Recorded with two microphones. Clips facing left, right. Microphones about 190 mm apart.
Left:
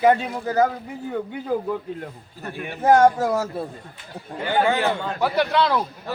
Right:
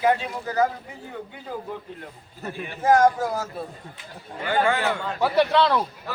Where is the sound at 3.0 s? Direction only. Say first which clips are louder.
Left 3 dB; 70° left (ahead or behind).